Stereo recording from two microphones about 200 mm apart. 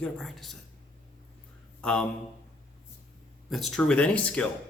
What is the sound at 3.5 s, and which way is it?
Speech, centre (ahead or behind).